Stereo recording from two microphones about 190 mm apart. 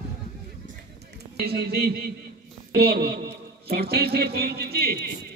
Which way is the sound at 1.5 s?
55° right (ahead or behind).